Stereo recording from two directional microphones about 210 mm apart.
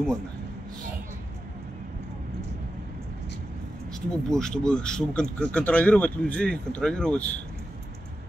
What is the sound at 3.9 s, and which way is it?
Speech, 5° left (ahead or behind).